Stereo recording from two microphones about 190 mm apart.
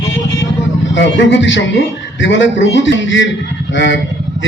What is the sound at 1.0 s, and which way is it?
A man's voice, 70° left (ahead or behind).